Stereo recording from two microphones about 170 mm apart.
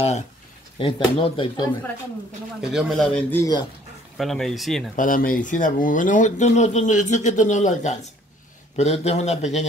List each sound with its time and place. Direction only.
0.7 s a man's voice: 30° left (ahead or behind)
2.7 s a man's voice: centre (ahead or behind)
4.2 s a man's voice: centre (ahead or behind)
4.9 s a man's voice: 55° left (ahead or behind)